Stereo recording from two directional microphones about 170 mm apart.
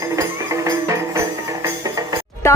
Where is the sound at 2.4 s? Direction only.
15° left (ahead or behind).